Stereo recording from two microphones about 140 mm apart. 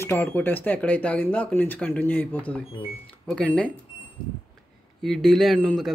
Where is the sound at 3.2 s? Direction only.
10° left (ahead or behind).